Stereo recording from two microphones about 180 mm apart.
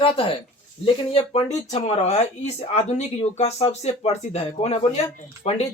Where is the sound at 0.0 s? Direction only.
30° left (ahead or behind).